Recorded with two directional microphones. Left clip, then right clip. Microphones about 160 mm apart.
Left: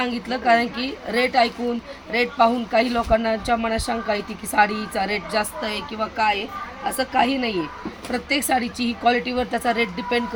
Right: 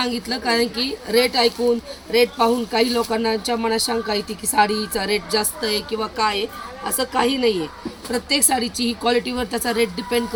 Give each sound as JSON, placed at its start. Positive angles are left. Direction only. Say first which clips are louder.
{"t": 0.0, "sound": "speech", "louder": "even", "side_deg": 15}